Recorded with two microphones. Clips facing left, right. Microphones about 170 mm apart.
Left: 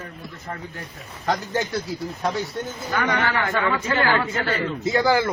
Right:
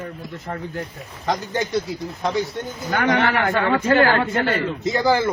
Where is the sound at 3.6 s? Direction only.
50° right (ahead or behind).